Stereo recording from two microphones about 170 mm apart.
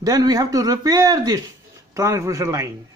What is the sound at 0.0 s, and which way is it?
Speech, 20° right (ahead or behind).